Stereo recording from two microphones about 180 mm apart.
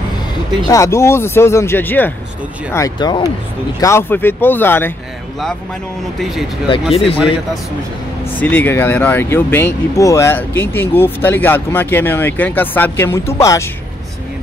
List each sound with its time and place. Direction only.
0.7 s speech: 15° left (ahead or behind)
2.7 s speech: 20° left (ahead or behind)
3.8 s speech: 15° left (ahead or behind)
6.7 s speech: 30° left (ahead or behind)
8.4 s speech: 10° left (ahead or behind)